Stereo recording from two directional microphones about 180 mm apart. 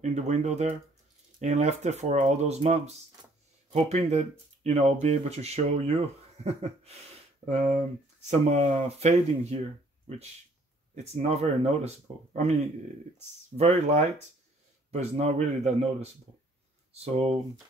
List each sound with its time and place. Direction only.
0.0 s speech: 40° right (ahead or behind)
11.1 s speech: 35° right (ahead or behind)
13.6 s speech: 40° right (ahead or behind)